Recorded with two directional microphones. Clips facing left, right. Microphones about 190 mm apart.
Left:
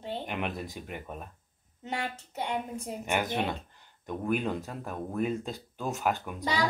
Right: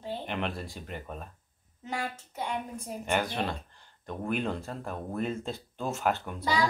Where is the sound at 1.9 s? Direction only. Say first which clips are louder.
Even; 25° left (ahead or behind).